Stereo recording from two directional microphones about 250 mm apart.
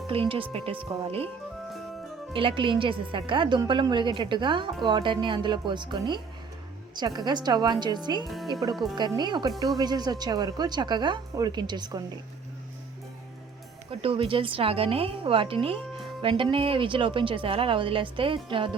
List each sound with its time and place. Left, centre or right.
0.1 s a woman's voice: right
2.3 s a woman's voice: right
8.7 s speech: centre
9.0 s speech: centre
14.0 s a woman's voice: right